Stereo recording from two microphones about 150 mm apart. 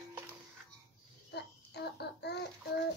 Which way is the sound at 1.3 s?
90° left.